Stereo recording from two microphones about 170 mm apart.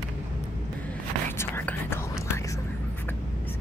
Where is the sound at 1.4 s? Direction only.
15° left (ahead or behind).